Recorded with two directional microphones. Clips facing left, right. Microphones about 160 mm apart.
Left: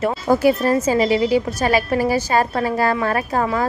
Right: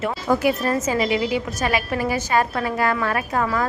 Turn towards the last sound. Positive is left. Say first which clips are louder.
# left 2 dB
turn(degrees=30)  # may be behind; listen again after turning